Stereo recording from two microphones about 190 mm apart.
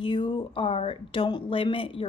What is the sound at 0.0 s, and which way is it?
Speech, 25° left (ahead or behind).